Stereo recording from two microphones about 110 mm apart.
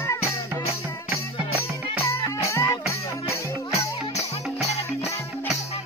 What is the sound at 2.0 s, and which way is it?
Music, 25° left (ahead or behind).